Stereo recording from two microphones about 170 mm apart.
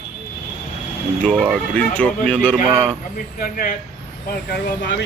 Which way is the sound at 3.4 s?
60° left (ahead or behind).